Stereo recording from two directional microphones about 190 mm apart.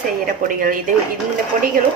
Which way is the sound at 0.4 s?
45° right (ahead or behind).